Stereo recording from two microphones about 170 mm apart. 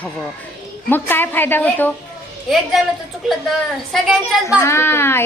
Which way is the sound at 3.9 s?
Centre (ahead or behind).